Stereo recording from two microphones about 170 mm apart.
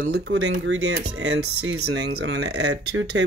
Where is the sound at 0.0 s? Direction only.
75° right (ahead or behind).